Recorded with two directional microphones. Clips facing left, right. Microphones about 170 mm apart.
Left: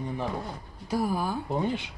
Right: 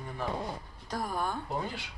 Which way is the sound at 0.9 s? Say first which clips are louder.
Left 6 dB; 5° left (ahead or behind).